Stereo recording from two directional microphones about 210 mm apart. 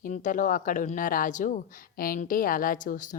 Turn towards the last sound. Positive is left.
turn(degrees=40)  # may be behind; listen again after turning